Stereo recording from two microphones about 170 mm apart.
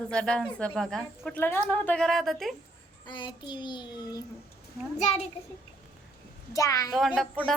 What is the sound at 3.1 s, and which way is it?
A child's voice, 25° left (ahead or behind).